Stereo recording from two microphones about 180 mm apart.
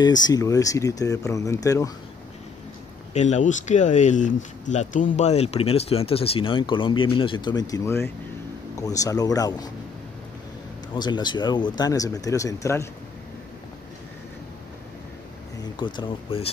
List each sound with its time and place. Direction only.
0.0 s speech: 20° left (ahead or behind)
3.1 s speech: 40° left (ahead or behind); by 9.7 s 20° left (ahead or behind)
11.0 s speech: 25° left (ahead or behind)
15.8 s speech: 30° left (ahead or behind)